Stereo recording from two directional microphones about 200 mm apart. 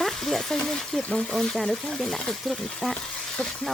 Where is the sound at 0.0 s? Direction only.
Centre (ahead or behind).